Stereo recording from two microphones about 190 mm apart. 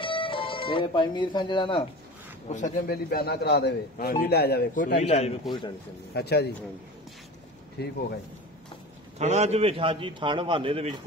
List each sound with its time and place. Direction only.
0.0 s speech: 25° left (ahead or behind)
2.5 s speech: 40° left (ahead or behind)
3.1 s a man's voice: 55° left (ahead or behind)
5.0 s speech: 35° left (ahead or behind)
6.1 s a man's voice: 60° left (ahead or behind)
7.8 s a man's voice: 60° left (ahead or behind)
9.2 s a man's voice: 35° right (ahead or behind)